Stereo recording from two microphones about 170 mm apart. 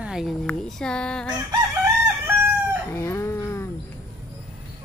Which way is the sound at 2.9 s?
15° left (ahead or behind).